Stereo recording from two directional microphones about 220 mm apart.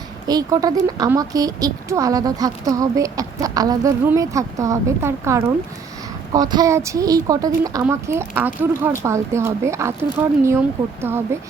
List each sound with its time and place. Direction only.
0.3 s a woman's voice: 15° right (ahead or behind)